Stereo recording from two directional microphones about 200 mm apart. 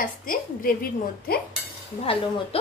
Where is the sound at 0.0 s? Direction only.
45° left (ahead or behind).